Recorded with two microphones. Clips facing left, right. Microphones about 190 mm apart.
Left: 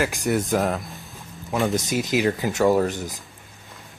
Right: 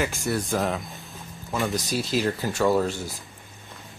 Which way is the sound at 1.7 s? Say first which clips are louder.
Left 3 dB; 20° left (ahead or behind).